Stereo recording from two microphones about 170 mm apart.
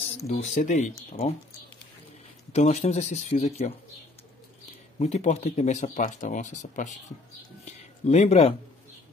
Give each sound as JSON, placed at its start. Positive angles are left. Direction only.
{"t": 0.3, "sound": "speech", "side_deg": 45}
{"t": 2.5, "sound": "speech", "side_deg": 40}
{"t": 4.9, "sound": "speech", "side_deg": 40}